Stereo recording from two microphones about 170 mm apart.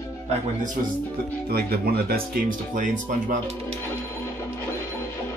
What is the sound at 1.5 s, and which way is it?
Speech, 65° right (ahead or behind).